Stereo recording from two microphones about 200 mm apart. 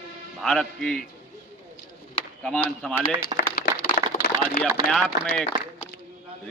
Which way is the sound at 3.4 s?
45° left (ahead or behind).